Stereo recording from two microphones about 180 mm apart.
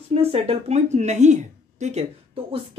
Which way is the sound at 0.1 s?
35° right (ahead or behind).